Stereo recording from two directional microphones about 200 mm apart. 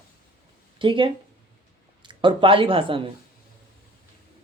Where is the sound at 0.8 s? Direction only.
25° right (ahead or behind).